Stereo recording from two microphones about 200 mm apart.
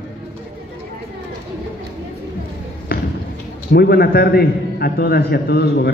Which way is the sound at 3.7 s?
50° left (ahead or behind).